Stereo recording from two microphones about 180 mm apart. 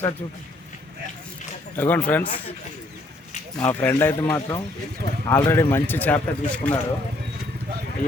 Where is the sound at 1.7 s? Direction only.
10° left (ahead or behind).